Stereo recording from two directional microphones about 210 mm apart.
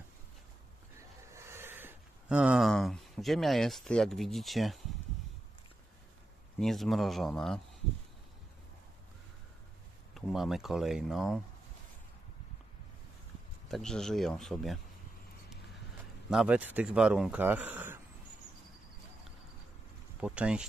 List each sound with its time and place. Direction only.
0.9 s speech: 15° right (ahead or behind)
6.6 s speech: centre (ahead or behind)
10.1 s speech: centre (ahead or behind)
13.7 s speech: centre (ahead or behind)
16.3 s speech: 5° right (ahead or behind)
20.2 s speech: 5° right (ahead or behind)